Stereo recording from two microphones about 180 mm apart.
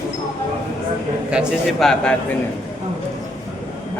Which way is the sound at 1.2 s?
5° right (ahead or behind).